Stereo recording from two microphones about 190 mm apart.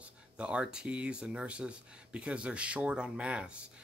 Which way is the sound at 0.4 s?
5° right (ahead or behind).